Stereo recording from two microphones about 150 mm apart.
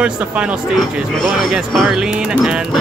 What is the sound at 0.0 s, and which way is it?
Speech, 5° right (ahead or behind).